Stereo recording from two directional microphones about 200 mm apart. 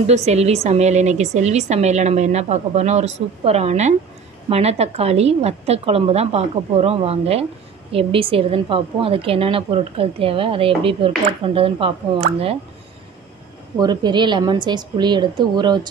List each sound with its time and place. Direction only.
0.0 s a woman's voice: 35° right (ahead or behind)
13.7 s a woman's voice: 20° right (ahead or behind)